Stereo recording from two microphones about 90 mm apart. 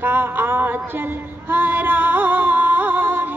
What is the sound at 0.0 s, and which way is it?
Music, 20° right (ahead or behind).